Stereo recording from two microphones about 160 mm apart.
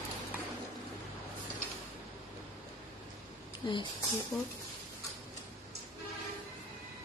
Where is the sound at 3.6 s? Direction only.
30° left (ahead or behind).